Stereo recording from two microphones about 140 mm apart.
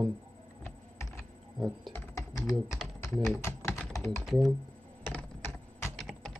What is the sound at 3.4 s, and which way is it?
Typing, 20° left (ahead or behind).